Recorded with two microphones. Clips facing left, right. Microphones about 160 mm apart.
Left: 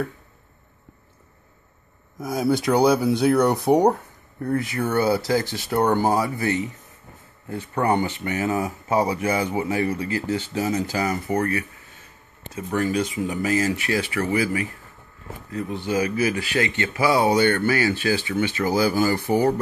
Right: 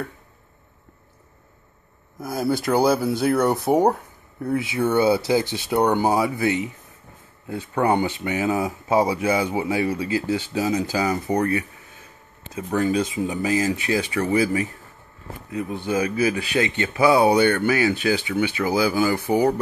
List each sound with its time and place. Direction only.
2.1 s speech: centre (ahead or behind); by 14.7 s 25° right (ahead or behind)
15.5 s speech: 15° right (ahead or behind)